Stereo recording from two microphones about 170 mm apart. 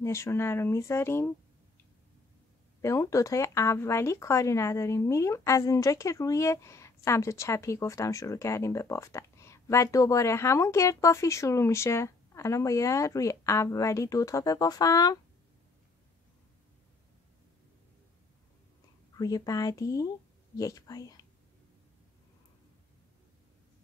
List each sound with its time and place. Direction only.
0.0 s a woman's voice: 15° left (ahead or behind)
2.8 s a woman's voice: 20° left (ahead or behind)
19.1 s speech: 20° left (ahead or behind)